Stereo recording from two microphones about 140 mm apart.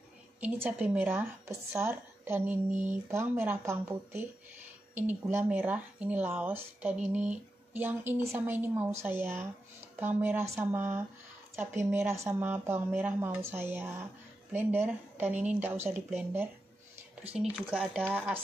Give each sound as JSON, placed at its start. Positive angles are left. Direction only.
{"t": 0.4, "sound": "speech", "side_deg": -10}
{"t": 2.7, "sound": "a sound", "side_deg": -60}
{"t": 3.1, "sound": "speech", "side_deg": -20}
{"t": 17.3, "sound": "speech", "side_deg": 0}